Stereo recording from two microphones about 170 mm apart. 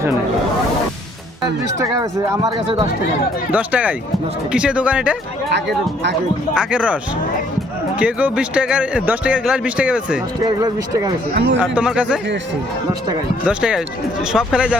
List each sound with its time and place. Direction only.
1.8 s speech: 20° right (ahead or behind)
3.5 s speech: 10° right (ahead or behind)
5.5 s speech: 90° right
6.5 s speech: 5° right (ahead or behind)
10.4 s speech: 20° right (ahead or behind)
11.3 s speech: 70° right (ahead or behind)
11.6 s speech: 5° right (ahead or behind)
13.5 s speech: 5° right (ahead or behind)